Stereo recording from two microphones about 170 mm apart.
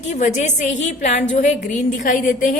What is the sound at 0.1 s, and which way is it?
A woman's voice, 45° left (ahead or behind).